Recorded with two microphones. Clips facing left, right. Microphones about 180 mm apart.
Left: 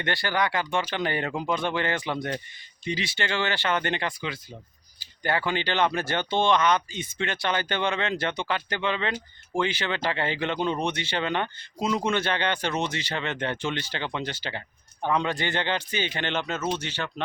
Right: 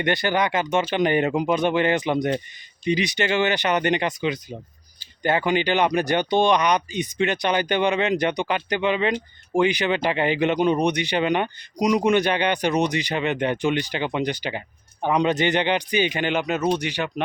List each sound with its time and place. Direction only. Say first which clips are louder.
0.0 s speech: right 5 dB; 20° right (ahead or behind)